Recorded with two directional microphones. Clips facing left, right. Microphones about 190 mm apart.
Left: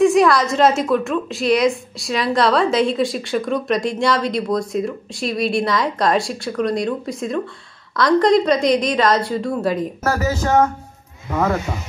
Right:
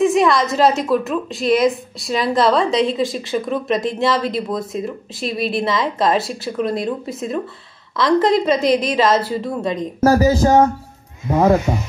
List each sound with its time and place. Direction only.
0.0 s a woman's voice: centre (ahead or behind)
10.0 s speech: 30° right (ahead or behind)